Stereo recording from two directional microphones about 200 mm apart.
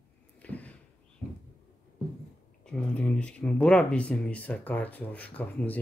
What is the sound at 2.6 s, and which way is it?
Speech, 5° left (ahead or behind).